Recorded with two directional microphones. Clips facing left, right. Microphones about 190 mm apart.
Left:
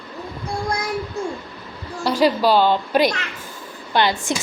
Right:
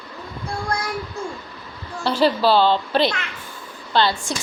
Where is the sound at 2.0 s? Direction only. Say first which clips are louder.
Left 1 dB; 10° left (ahead or behind).